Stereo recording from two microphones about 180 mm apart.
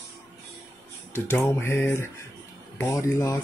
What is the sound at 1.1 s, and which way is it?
Speech, 15° left (ahead or behind).